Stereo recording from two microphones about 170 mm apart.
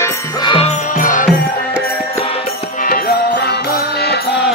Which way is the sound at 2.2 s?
35° left (ahead or behind).